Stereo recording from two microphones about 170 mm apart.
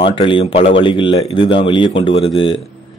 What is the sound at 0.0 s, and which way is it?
A man's voice, 30° left (ahead or behind).